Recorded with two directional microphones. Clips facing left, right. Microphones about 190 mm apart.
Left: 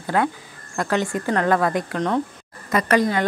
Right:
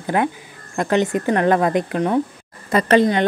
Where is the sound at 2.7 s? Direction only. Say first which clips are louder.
Right 4 dB; 30° right (ahead or behind).